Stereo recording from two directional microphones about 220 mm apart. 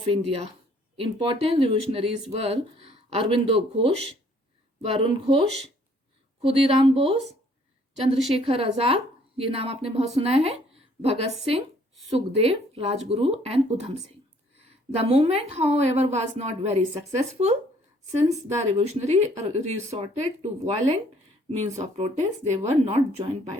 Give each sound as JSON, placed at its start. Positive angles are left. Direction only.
{"t": 0.0, "sound": "a woman's voice", "side_deg": -25}
{"t": 14.9, "sound": "a woman's voice", "side_deg": -30}